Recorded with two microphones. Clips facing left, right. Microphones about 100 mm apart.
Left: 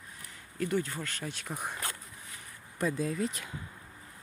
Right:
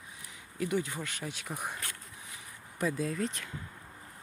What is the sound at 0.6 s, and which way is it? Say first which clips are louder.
Speech: left 1 dB; 10° right (ahead or behind).